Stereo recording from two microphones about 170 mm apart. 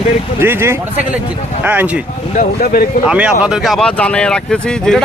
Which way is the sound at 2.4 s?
60° left (ahead or behind).